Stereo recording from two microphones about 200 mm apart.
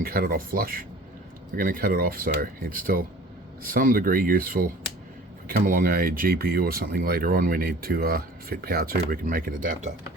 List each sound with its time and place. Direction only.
0.0 s speech: 45° right (ahead or behind)